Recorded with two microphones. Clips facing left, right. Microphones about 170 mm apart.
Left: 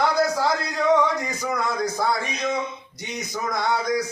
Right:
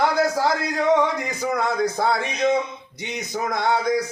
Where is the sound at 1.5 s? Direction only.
55° right (ahead or behind).